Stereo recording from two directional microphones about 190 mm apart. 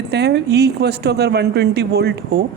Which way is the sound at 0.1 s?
60° right (ahead or behind).